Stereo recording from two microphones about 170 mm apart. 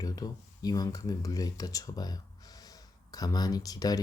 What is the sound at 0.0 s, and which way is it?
Speech, 20° left (ahead or behind).